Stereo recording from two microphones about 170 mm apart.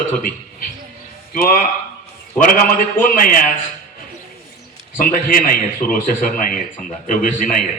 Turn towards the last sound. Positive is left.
turn(degrees=50)  # may be behind; listen again after turning